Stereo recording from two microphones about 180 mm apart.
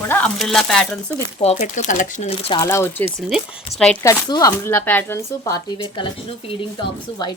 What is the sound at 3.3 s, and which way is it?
Speech, centre (ahead or behind).